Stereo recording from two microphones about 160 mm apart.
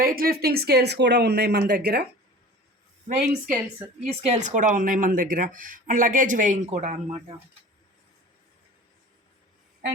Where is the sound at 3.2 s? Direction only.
55° right (ahead or behind).